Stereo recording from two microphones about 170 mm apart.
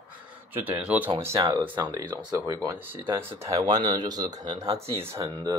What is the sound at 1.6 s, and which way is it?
Speech, 25° right (ahead or behind).